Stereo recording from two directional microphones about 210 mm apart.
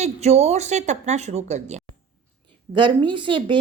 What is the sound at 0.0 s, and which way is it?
Speech, 30° right (ahead or behind).